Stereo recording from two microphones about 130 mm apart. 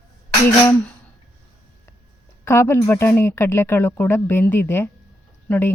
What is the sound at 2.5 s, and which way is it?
Speech, 15° left (ahead or behind).